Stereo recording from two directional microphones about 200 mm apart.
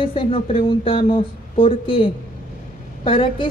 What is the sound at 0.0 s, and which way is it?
Speech, 25° left (ahead or behind).